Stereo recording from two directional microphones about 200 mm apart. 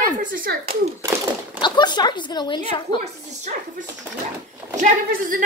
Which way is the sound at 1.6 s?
20° left (ahead or behind).